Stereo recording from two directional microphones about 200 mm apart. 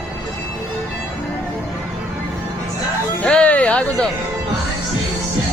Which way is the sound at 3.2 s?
5° left (ahead or behind).